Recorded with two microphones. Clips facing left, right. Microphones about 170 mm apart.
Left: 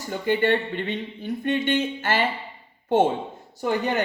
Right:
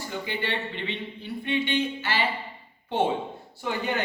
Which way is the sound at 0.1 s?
50° left (ahead or behind).